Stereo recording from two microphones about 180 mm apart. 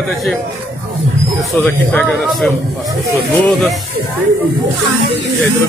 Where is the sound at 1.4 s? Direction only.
10° left (ahead or behind).